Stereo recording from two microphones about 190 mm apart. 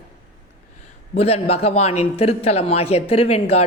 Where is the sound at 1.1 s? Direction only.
30° left (ahead or behind).